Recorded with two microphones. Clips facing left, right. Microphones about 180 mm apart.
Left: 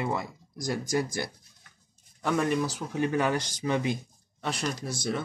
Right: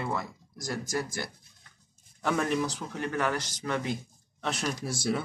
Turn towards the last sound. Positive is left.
turn(degrees=-10)  # may be behind; listen again after turning